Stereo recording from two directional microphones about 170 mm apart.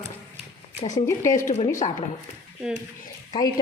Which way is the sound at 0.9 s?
15° left (ahead or behind).